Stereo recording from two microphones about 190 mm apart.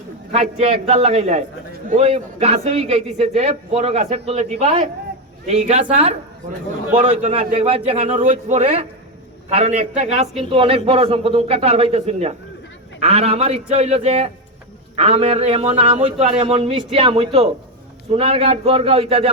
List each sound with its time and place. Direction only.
0.6 s a man's voice: 35° right (ahead or behind)